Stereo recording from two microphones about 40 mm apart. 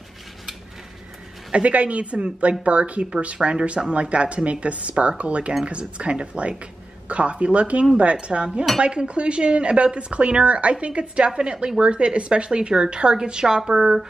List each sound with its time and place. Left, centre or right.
1.5 s a woman's voice: right